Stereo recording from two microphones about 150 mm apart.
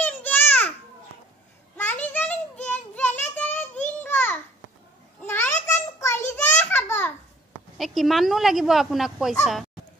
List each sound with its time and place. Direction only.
0.0 s babbling: 10° left (ahead or behind)
1.8 s child singing: 10° left (ahead or behind)
5.2 s a sound: 15° left (ahead or behind)
5.9 s child singing: 20° left (ahead or behind)
6.3 s a sound: 10° left (ahead or behind)
7.7 s speech: centre (ahead or behind)